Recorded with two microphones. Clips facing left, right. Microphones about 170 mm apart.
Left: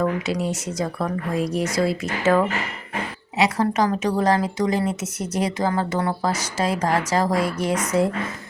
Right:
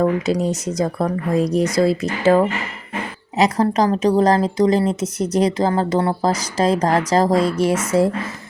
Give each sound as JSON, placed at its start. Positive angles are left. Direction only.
{"t": 0.0, "sound": "a woman's voice", "side_deg": -35}
{"t": 7.5, "sound": "a woman's voice", "side_deg": -25}